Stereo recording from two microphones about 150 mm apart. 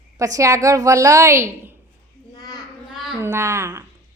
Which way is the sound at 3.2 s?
20° right (ahead or behind).